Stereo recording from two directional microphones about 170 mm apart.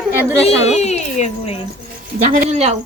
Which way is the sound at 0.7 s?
40° left (ahead or behind).